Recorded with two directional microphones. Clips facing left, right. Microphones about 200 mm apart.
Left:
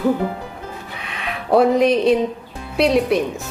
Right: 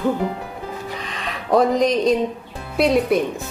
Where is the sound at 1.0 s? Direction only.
5° left (ahead or behind).